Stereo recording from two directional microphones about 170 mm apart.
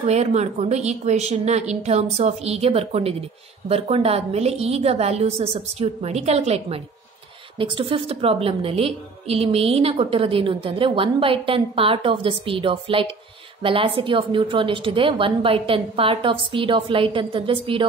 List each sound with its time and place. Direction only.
0.0 s a woman's voice: 40° right (ahead or behind)